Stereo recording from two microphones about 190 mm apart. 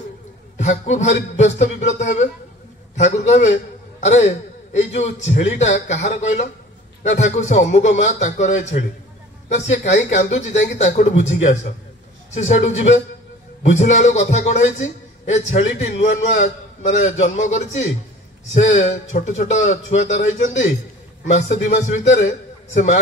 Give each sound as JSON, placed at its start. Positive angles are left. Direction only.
{"t": 0.6, "sound": "a man's voice", "side_deg": 35}